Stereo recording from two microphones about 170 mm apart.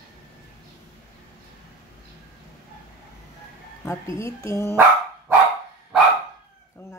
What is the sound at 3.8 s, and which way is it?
Speech, 15° left (ahead or behind).